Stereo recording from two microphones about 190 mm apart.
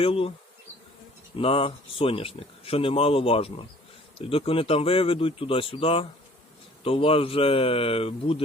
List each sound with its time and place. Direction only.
0.0 s speech: 30° left (ahead or behind)
1.4 s speech: 30° left (ahead or behind)